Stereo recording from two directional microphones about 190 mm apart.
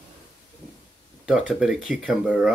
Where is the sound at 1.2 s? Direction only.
5° right (ahead or behind).